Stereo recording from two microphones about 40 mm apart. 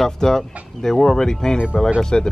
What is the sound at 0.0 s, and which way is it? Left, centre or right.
Speech, centre.